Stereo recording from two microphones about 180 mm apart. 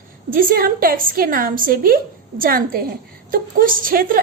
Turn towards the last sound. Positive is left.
turn(degrees=-50)  # may be behind; listen again after turning